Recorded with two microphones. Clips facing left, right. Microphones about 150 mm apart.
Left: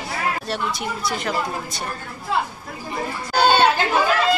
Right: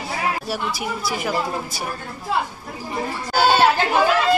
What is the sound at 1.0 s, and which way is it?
Speech, 5° right (ahead or behind).